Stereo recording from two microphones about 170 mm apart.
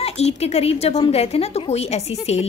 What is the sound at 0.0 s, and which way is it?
A woman's voice, 40° left (ahead or behind).